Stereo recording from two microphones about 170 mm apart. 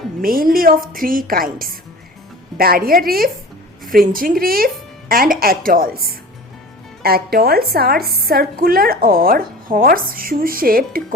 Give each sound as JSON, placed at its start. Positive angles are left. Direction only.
{"t": 0.2, "sound": "a woman's voice", "side_deg": -60}